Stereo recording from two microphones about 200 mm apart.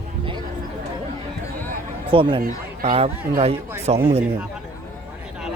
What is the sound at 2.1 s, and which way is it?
Speech, 25° right (ahead or behind).